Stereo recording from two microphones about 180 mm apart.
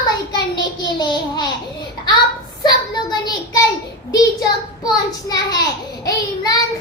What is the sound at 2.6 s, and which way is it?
Child singing, 25° left (ahead or behind).